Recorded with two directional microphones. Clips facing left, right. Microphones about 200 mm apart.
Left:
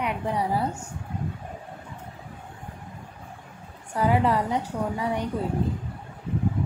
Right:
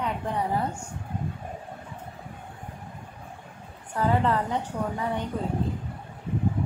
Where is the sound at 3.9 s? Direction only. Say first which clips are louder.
Left 2 dB; 10° left (ahead or behind).